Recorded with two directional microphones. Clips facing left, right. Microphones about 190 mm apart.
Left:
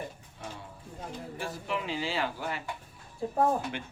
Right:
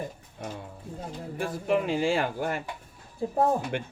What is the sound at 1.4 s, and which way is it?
Speech, 50° right (ahead or behind).